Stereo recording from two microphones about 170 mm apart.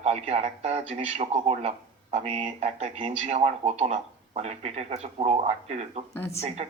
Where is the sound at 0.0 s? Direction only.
40° right (ahead or behind).